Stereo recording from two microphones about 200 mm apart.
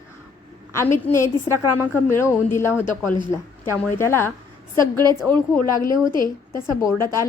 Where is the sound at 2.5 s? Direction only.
10° left (ahead or behind).